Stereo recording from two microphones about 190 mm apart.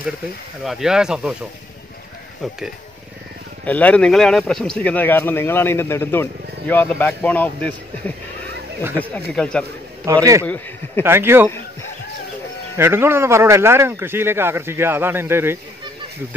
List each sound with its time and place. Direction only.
0.7 s speech: centre (ahead or behind)
3.6 s speech: 10° left (ahead or behind)
9.3 s speech: 5° left (ahead or behind)
10.0 s speech: 15° right (ahead or behind)
12.7 s speech: 10° right (ahead or behind)